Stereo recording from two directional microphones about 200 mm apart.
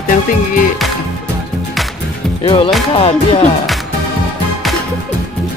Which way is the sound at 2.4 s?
25° left (ahead or behind).